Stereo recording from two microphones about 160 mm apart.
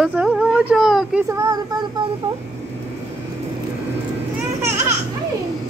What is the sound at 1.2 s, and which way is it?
Speech, 20° right (ahead or behind).